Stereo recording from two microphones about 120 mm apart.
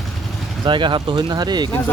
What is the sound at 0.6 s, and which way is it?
Speech, 40° right (ahead or behind).